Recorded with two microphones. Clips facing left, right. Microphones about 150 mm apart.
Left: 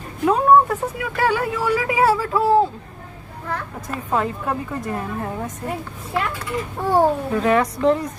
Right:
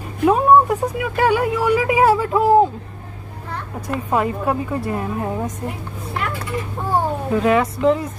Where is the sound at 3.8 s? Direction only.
10° right (ahead or behind).